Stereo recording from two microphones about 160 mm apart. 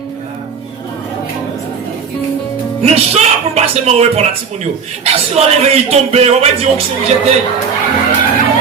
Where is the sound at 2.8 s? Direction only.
40° right (ahead or behind).